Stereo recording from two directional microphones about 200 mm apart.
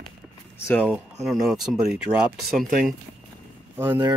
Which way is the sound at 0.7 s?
5° left (ahead or behind).